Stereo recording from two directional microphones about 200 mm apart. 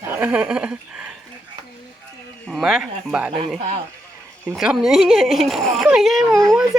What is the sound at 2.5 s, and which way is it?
Speech, 5° right (ahead or behind).